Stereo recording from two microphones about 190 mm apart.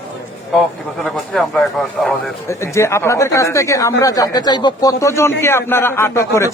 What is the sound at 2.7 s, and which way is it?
Speech, 15° left (ahead or behind).